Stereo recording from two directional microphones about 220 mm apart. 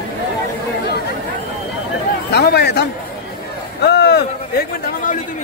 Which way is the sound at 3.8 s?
50° left (ahead or behind).